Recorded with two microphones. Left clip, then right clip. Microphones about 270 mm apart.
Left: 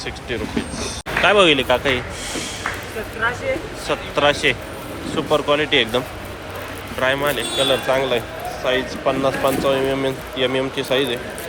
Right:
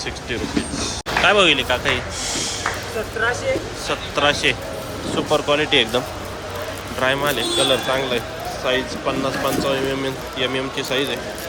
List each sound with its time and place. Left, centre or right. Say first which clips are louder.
1.2 s speech: left 1 dB; centre
3.8 s speech: left 2 dB; centre
7.0 s speech: even; centre